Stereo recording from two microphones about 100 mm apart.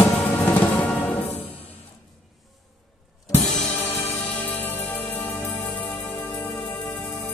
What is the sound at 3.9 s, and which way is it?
Music, 90° left.